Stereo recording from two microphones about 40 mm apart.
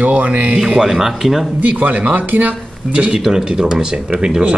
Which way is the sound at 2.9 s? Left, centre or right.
Right.